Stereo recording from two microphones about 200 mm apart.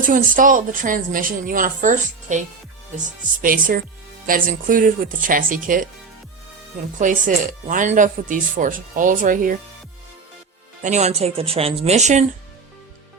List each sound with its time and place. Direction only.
0.0 s speech: 40° right (ahead or behind)
7.0 s speech: 40° right (ahead or behind)
10.8 s speech: 35° right (ahead or behind)